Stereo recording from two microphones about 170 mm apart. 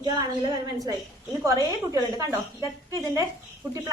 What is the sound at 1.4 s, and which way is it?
A woman's voice, 20° right (ahead or behind).